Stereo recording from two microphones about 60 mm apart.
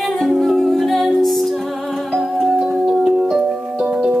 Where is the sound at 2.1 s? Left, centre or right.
Centre.